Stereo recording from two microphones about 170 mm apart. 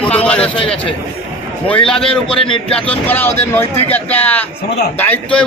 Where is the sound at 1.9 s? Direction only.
5° left (ahead or behind).